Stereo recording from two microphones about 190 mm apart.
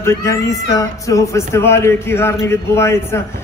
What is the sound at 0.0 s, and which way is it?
A man's voice, 15° left (ahead or behind).